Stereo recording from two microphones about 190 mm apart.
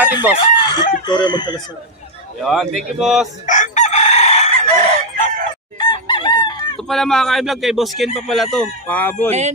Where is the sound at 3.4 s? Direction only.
40° left (ahead or behind).